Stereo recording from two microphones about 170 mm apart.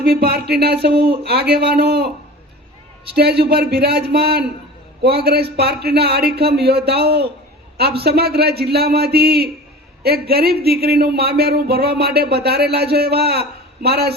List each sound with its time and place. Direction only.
0.0 s speech: 65° right (ahead or behind)
3.2 s speech: 70° right (ahead or behind)